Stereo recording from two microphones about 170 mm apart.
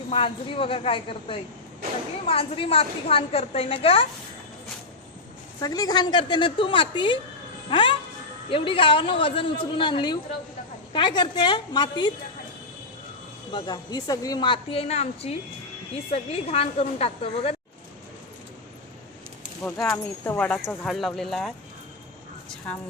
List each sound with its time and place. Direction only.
0.1 s a woman's voice: 30° left (ahead or behind)
5.5 s a woman's voice: 20° left (ahead or behind)
13.5 s a woman's voice: 25° left (ahead or behind)
19.6 s speech: 5° left (ahead or behind)